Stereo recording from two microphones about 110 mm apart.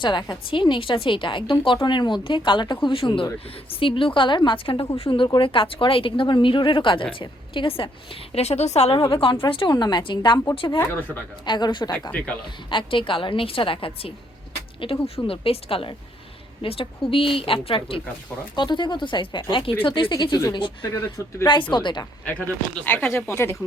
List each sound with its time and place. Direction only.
0.0 s a woman's voice: 45° left (ahead or behind)
8.3 s a woman's voice: 75° left (ahead or behind)
8.9 s a woman's voice: 50° left (ahead or behind)
11.4 s a woman's voice: 45° left (ahead or behind)
18.5 s a woman's voice: 45° left (ahead or behind)
22.3 s speech: 15° left (ahead or behind)